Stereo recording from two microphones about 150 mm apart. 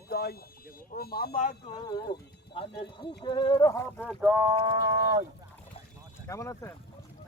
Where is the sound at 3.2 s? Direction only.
30° left (ahead or behind).